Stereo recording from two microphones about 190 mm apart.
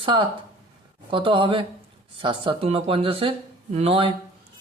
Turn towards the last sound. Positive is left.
turn(degrees=-30)  # may be behind; listen again after turning